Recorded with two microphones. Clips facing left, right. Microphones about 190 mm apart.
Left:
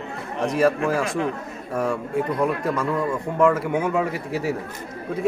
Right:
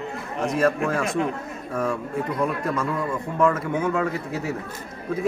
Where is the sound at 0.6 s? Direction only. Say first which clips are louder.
Left 2 dB; 5° left (ahead or behind).